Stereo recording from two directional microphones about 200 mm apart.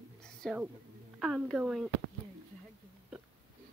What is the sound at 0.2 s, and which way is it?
Whispering, 5° left (ahead or behind).